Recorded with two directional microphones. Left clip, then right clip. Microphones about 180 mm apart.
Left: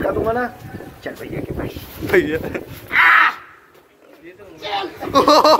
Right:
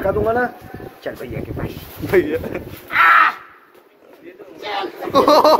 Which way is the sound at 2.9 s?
20° right (ahead or behind).